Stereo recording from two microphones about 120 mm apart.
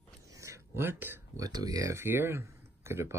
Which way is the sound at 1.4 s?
30° right (ahead or behind).